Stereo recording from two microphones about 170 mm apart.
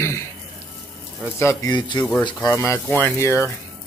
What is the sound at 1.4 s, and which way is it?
Speech, 15° left (ahead or behind).